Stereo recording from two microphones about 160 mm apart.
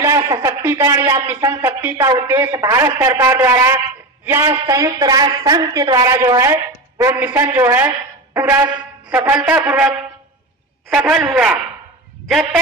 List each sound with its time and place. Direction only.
0.2 s a woman's voice: 20° right (ahead or behind); by 11.6 s 5° right (ahead or behind)